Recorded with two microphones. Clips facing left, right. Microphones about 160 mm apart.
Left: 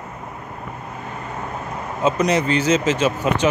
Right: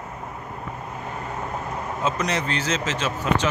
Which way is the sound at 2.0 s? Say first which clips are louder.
Left 8 dB; 10° left (ahead or behind).